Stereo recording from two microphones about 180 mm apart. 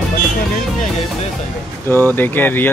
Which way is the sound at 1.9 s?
10° left (ahead or behind).